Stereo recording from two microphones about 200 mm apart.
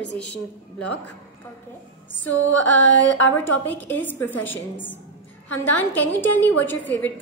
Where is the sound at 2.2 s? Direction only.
10° left (ahead or behind).